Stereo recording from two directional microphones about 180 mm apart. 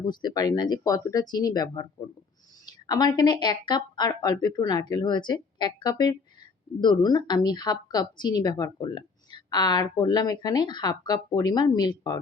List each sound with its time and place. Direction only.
0.0 s speech: 25° left (ahead or behind)